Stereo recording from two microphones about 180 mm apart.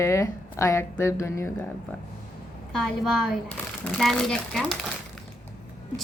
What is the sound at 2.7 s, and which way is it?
Speech, centre (ahead or behind).